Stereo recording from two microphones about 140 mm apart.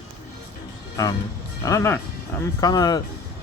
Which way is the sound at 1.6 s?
20° left (ahead or behind).